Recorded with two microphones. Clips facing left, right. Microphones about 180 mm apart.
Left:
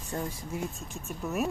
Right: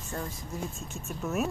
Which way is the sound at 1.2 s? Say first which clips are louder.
Right 1 dB; centre (ahead or behind).